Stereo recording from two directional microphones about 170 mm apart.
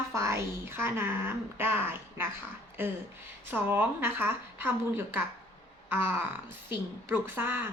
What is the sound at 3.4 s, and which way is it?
A woman's voice, 10° right (ahead or behind).